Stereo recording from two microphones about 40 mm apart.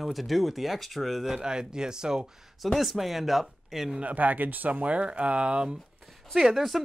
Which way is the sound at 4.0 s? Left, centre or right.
Right.